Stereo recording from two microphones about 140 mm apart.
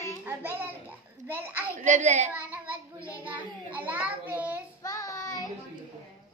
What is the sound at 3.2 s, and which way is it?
A child's voice, 10° right (ahead or behind).